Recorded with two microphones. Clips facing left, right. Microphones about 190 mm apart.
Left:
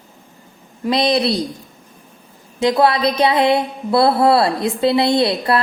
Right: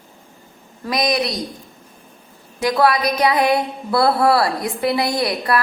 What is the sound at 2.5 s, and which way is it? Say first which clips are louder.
Speech: left 2 dB; 25° left (ahead or behind).